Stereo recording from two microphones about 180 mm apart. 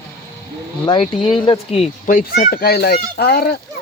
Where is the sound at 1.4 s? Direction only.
30° left (ahead or behind).